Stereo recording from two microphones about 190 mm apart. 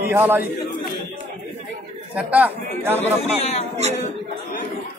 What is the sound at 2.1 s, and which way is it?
Speech, 10° right (ahead or behind).